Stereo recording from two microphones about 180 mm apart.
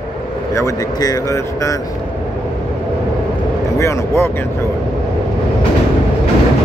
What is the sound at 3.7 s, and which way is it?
Speech, 15° left (ahead or behind).